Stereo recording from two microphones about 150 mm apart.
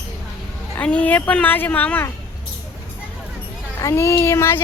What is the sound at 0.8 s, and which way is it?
Speech, 10° left (ahead or behind).